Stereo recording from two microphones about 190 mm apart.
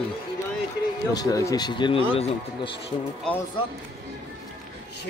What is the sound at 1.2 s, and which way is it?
Speech, 20° left (ahead or behind).